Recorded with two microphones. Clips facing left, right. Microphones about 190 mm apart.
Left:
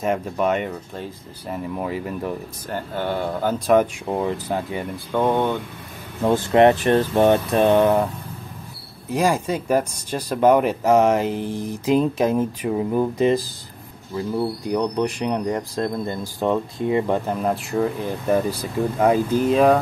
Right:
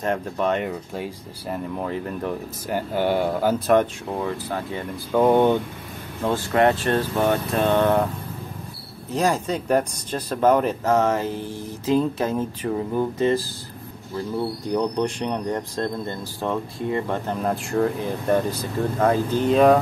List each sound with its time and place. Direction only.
0.0 s speech: 5° left (ahead or behind)
0.7 s speech: 10° right (ahead or behind)
1.5 s speech: 5° left (ahead or behind)
2.7 s speech: 10° right (ahead or behind)
3.8 s speech: 20° left (ahead or behind)
5.1 s speech: 10° right (ahead or behind)
6.2 s speech: 20° left (ahead or behind)
9.1 s speech: 10° left (ahead or behind)
14.7 s speech: centre (ahead or behind)
17.3 s speech: 5° left (ahead or behind)